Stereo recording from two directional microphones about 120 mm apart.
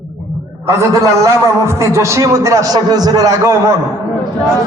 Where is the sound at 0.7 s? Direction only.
25° right (ahead or behind).